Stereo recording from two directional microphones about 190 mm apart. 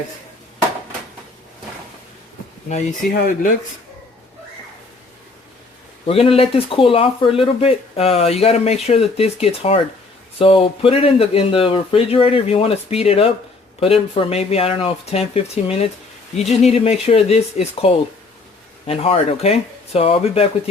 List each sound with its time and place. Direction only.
3.1 s speech: 45° left (ahead or behind)
6.1 s speech: 30° left (ahead or behind)